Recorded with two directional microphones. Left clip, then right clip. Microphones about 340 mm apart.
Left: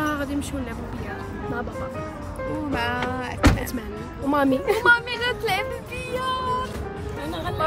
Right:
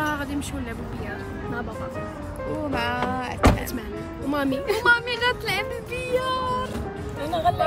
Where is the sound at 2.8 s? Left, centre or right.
Centre.